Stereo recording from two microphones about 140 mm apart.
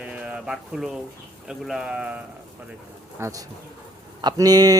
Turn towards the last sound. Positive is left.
turn(degrees=-25)  # may be behind; listen again after turning